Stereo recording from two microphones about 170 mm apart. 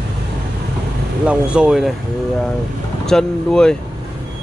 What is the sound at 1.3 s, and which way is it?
Speech, 5° right (ahead or behind).